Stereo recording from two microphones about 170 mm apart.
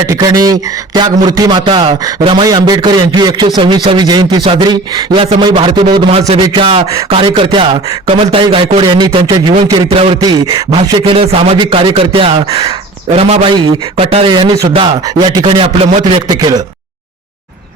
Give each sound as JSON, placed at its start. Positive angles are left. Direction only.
{"t": 0.1, "sound": "a man's voice", "side_deg": -20}
{"t": 16.3, "sound": "speech", "side_deg": -25}